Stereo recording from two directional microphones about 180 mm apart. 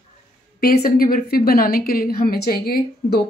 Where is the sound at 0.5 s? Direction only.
55° left (ahead or behind).